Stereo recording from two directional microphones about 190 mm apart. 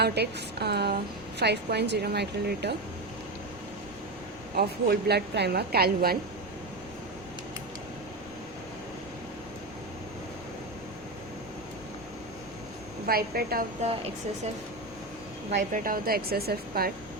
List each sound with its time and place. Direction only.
0.0 s a woman's voice: 60° right (ahead or behind)
4.5 s a woman's voice: 55° right (ahead or behind)
13.1 s speech: 50° right (ahead or behind)
15.7 s speech: 45° right (ahead or behind)